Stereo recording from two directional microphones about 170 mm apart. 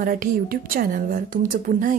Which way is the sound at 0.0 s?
55° right (ahead or behind).